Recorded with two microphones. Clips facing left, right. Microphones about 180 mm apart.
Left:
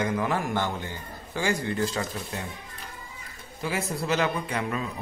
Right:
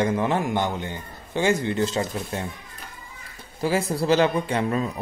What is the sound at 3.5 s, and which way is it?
Speech, 35° right (ahead or behind).